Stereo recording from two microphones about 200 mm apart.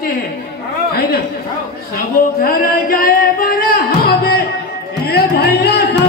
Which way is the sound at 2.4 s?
45° left (ahead or behind).